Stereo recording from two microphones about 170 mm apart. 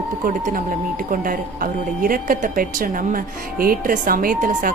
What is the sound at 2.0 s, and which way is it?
A woman's voice, 55° right (ahead or behind).